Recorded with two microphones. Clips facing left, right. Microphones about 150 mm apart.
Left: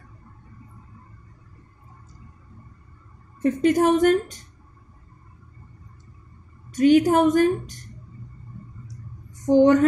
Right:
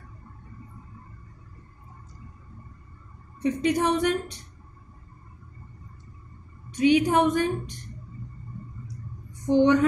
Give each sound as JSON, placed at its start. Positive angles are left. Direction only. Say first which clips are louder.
{"t": 3.4, "sound": "a woman's voice", "louder": "left 5 dB", "side_deg": 45}
{"t": 6.7, "sound": "a woman's voice", "louder": "left 4 dB", "side_deg": 45}
{"t": 9.5, "sound": "a sound", "louder": "left 4 dB", "side_deg": 40}